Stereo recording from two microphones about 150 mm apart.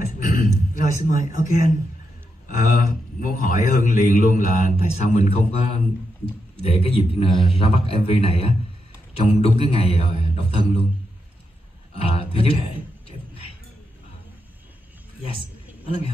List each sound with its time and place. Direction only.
0.2 s a sound: 65° left (ahead or behind)
2.4 s a man's voice: 65° left (ahead or behind); by 10.8 s 40° left (ahead or behind)
11.9 s a man's voice: 40° left (ahead or behind)